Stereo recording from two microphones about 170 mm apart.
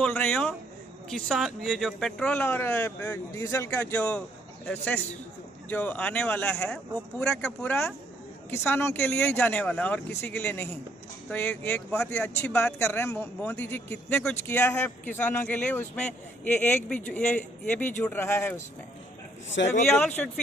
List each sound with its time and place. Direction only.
0.0 s speech: 5° left (ahead or behind)
19.6 s a man's voice: 90° left
20.0 s speech: 10° left (ahead or behind)